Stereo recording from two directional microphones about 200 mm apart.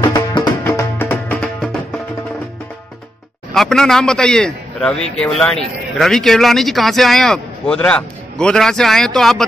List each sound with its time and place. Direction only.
0.0 s music: 25° left (ahead or behind)
0.7 s music: 10° left (ahead or behind)
3.5 s a man's voice: centre (ahead or behind)